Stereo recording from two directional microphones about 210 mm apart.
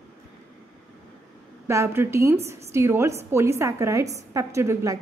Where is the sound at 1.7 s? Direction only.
10° right (ahead or behind).